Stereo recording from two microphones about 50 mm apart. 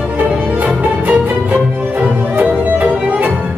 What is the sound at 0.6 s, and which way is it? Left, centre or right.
Music, right.